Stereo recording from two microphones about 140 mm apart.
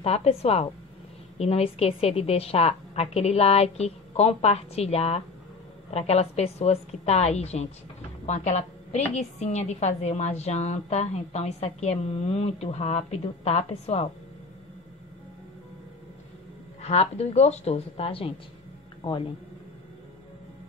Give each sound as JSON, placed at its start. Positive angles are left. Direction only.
{"t": 0.0, "sound": "a woman's voice", "side_deg": 45}
{"t": 16.8, "sound": "a woman's voice", "side_deg": 50}